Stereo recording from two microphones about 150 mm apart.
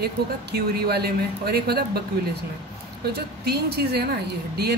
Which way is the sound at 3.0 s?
90° right.